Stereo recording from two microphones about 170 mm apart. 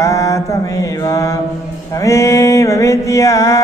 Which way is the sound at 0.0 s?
20° left (ahead or behind).